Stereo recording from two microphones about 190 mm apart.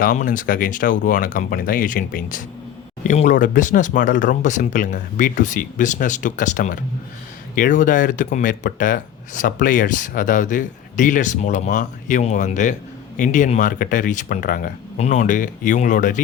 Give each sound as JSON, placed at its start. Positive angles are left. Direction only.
{"t": 0.0, "sound": "speech", "side_deg": 45}